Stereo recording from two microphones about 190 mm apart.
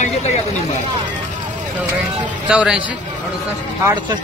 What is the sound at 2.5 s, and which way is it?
Speech, 5° right (ahead or behind).